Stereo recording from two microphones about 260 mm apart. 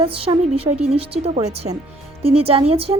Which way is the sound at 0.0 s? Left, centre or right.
Right.